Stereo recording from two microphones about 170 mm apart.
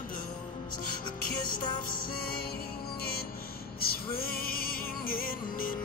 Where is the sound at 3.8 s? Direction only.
60° left (ahead or behind).